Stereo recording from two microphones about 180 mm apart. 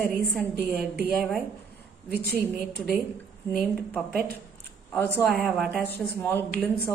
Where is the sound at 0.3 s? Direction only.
Centre (ahead or behind).